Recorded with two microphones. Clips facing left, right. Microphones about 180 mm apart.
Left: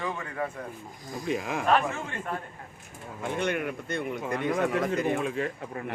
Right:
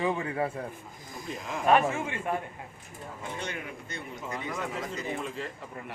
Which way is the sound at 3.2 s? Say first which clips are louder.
Left 9 dB; 60° left (ahead or behind).